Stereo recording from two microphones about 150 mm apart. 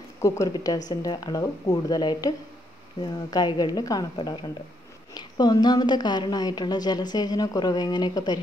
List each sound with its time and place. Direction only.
0.2 s a woman's voice: 25° left (ahead or behind)